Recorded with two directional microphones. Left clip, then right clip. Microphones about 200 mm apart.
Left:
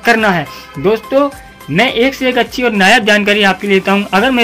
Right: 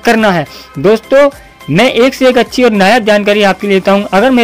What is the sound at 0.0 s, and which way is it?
Speech, 45° right (ahead or behind).